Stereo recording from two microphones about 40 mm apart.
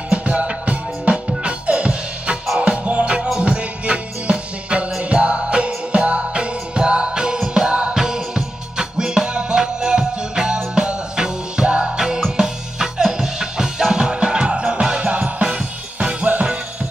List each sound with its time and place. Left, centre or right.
0.1 s music: right
7.9 s music: centre
12.4 s music: centre
15.0 s music: right